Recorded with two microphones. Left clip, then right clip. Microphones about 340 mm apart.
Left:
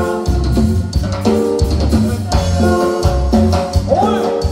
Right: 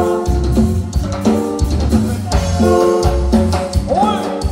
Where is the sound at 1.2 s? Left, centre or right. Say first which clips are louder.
Left 3 dB; centre.